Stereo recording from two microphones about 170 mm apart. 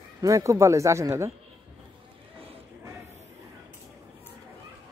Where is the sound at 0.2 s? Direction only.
20° right (ahead or behind).